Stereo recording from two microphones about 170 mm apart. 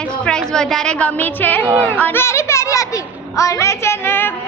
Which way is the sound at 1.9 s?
10° left (ahead or behind).